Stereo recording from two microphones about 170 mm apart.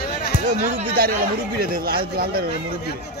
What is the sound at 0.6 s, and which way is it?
A man's voice, 60° right (ahead or behind).